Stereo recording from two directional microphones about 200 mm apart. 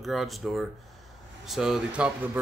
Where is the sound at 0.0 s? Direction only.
Centre (ahead or behind).